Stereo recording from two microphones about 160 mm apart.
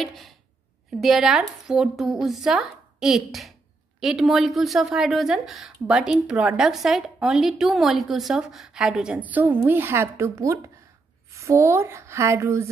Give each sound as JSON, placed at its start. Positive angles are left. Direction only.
{"t": 0.0, "sound": "a woman's voice", "side_deg": 0}